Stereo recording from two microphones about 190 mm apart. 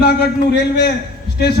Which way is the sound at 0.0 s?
60° left (ahead or behind).